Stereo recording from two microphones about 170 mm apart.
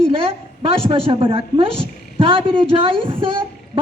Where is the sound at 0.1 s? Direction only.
35° right (ahead or behind).